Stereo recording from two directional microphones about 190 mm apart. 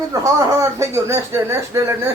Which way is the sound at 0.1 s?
15° right (ahead or behind).